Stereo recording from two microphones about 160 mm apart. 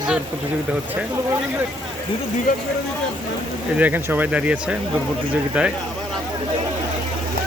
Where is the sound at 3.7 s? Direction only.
10° right (ahead or behind).